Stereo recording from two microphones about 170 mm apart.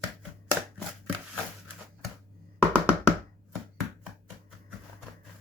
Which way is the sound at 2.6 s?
10° right (ahead or behind).